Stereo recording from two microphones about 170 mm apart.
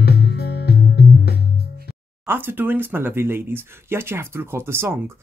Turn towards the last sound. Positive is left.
turn(degrees=-15)  # may be behind; listen again after turning